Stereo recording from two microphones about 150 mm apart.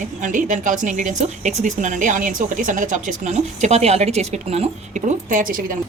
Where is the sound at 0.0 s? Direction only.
55° right (ahead or behind).